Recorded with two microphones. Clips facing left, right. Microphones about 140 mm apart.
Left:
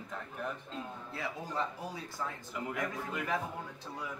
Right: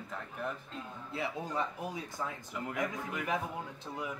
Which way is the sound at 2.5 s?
Centre (ahead or behind).